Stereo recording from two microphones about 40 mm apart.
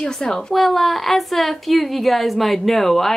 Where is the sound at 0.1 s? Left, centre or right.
Centre.